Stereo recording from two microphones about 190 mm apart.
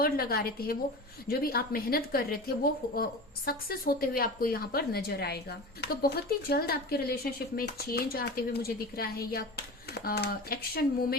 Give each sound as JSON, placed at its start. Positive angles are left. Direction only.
{"t": 0.0, "sound": "a woman's voice", "side_deg": 55}